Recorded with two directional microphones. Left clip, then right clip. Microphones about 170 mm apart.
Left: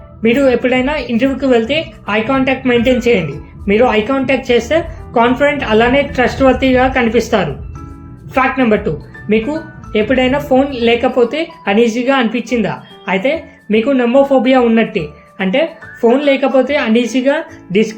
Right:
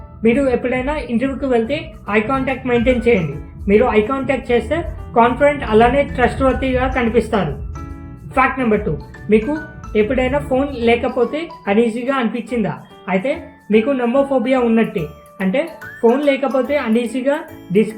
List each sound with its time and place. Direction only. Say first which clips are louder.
0.2 s speech: left 4 dB; 35° left (ahead or behind)
9.9 s speech: left 3 dB; 40° left (ahead or behind)